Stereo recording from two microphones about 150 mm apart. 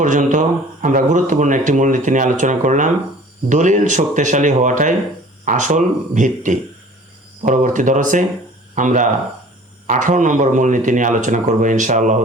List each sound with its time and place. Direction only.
0.0 s speech: 55° right (ahead or behind)